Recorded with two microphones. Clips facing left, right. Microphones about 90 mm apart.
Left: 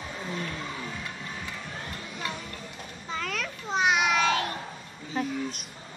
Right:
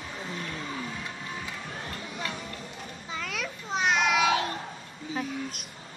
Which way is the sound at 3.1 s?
5° right (ahead or behind).